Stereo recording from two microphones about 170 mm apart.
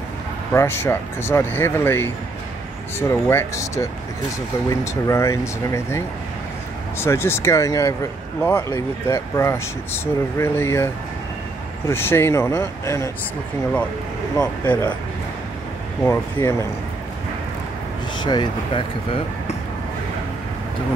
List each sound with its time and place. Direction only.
0.5 s speech: 15° left (ahead or behind)
11.9 s speech: 15° left (ahead or behind)
14.4 s speech: 15° left (ahead or behind)
16.0 s speech: 15° left (ahead or behind)
18.1 s speech: 25° left (ahead or behind)